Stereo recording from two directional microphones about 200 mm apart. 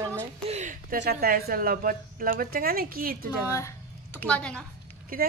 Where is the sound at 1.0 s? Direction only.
50° right (ahead or behind).